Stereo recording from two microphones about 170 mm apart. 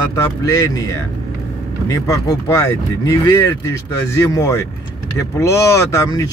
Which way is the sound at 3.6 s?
20° left (ahead or behind).